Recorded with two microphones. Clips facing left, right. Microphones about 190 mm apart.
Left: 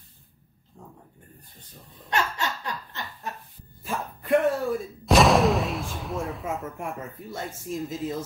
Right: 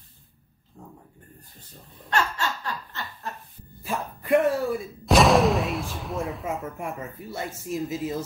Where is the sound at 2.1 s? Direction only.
20° left (ahead or behind).